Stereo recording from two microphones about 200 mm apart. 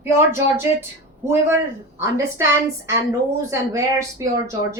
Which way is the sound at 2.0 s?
15° right (ahead or behind).